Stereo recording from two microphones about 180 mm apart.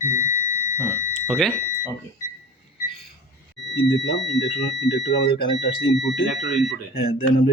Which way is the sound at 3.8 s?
80° left.